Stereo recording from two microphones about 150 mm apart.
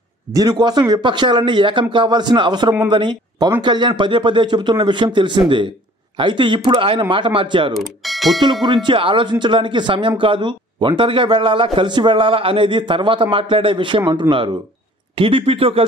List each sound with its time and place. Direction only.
0.3 s speech: 25° right (ahead or behind)
7.7 s speech: centre (ahead or behind)
8.6 s speech: 30° right (ahead or behind)
14.0 s speech: 20° right (ahead or behind)
15.1 s speech: 35° right (ahead or behind)